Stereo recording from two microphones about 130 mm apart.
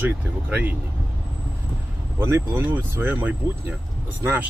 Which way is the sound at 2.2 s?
20° right (ahead or behind).